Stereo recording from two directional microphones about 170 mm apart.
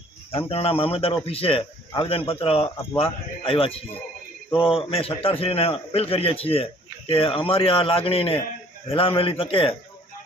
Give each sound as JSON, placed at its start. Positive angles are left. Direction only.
{"t": 0.3, "sound": "a man's voice", "side_deg": 35}